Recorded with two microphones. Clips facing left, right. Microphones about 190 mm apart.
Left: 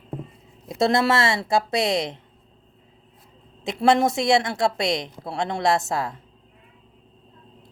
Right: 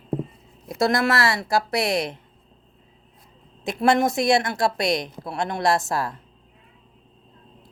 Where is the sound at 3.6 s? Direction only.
25° left (ahead or behind).